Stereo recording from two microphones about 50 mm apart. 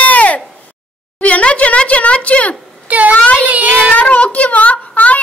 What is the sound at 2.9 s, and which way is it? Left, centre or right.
A child's voice, right.